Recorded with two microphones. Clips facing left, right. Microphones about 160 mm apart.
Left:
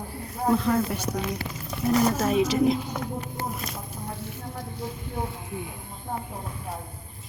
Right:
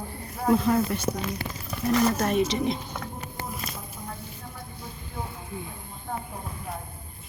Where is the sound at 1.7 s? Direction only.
5° left (ahead or behind).